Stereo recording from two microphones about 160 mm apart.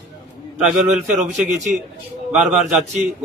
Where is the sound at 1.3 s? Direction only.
50° right (ahead or behind).